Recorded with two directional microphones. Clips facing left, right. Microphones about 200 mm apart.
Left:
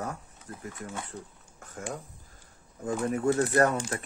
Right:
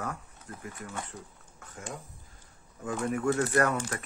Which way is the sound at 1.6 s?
45° left (ahead or behind).